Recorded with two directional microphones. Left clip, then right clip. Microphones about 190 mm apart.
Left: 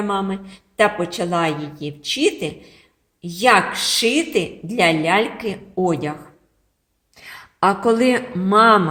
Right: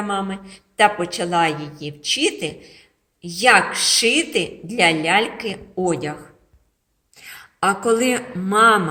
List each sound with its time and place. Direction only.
0.3 s a woman's voice: 40° left (ahead or behind)